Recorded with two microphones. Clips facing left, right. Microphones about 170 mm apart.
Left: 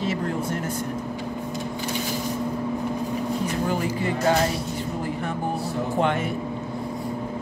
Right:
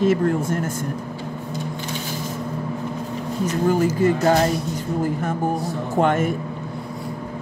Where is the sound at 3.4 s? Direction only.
45° right (ahead or behind).